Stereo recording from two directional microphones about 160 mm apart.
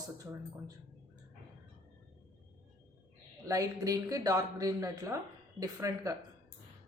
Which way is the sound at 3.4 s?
20° right (ahead or behind).